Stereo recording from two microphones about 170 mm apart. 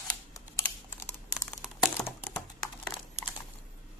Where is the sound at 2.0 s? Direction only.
10° left (ahead or behind).